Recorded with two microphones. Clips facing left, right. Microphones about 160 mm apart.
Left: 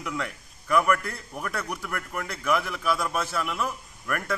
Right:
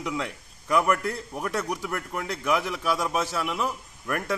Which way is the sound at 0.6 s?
20° right (ahead or behind).